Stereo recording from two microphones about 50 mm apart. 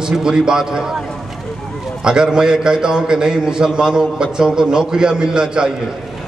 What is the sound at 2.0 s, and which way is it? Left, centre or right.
A man's voice, centre.